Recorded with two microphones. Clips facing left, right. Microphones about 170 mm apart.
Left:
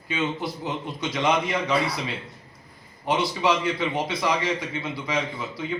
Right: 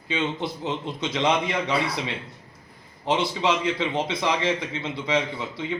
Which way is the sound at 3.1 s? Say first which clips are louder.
Even; 25° right (ahead or behind).